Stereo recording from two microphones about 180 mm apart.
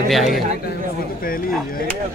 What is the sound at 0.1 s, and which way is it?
Speech, centre (ahead or behind).